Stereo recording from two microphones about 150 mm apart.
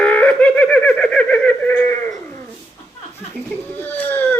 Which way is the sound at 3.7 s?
15° left (ahead or behind).